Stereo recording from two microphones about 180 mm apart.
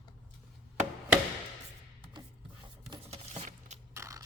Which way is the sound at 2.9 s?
35° right (ahead or behind).